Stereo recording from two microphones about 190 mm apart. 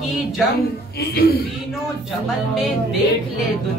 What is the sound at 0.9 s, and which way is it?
Speech, 55° left (ahead or behind).